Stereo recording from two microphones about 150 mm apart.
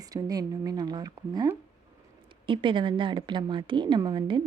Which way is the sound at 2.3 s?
35° right (ahead or behind).